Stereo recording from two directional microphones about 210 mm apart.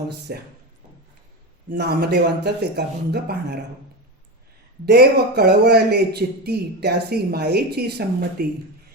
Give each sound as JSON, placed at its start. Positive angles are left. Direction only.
{"t": 0.3, "sound": "speech", "side_deg": -50}
{"t": 1.7, "sound": "speech", "side_deg": -50}
{"t": 4.9, "sound": "speech", "side_deg": -50}